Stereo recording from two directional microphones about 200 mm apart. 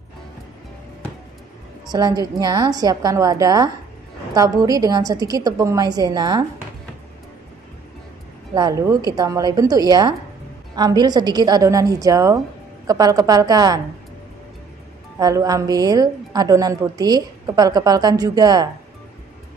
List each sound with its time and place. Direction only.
1.9 s a woman's voice: 20° right (ahead or behind)
8.5 s a woman's voice: 15° right (ahead or behind)
15.1 s a woman's voice: 20° right (ahead or behind)